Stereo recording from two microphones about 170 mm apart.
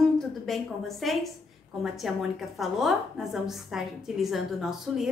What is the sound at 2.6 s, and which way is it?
A woman's voice, centre (ahead or behind).